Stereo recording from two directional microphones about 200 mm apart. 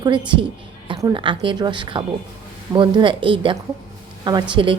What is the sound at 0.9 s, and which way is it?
Speech, 20° right (ahead or behind).